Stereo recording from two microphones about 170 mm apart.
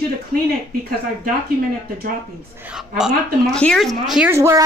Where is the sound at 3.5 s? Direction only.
5° left (ahead or behind).